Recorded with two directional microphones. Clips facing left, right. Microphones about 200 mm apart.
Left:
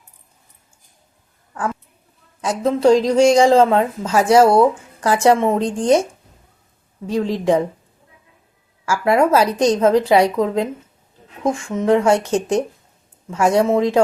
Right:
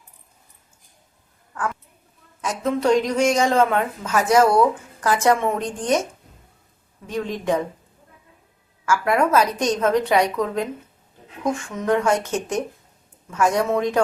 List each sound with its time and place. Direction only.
2.4 s a woman's voice: 30° left (ahead or behind)
7.1 s a woman's voice: 30° left (ahead or behind)
8.9 s a woman's voice: 30° left (ahead or behind)
11.7 s a woman's voice: 25° left (ahead or behind)